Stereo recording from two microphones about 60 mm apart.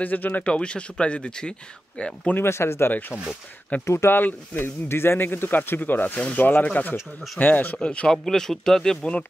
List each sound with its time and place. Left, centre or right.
0.0 s speech: left
2.3 s speech: left
2.9 s speech: left
3.8 s speech: left
4.1 s speech: left; by 8.2 s centre
8.3 s speech: centre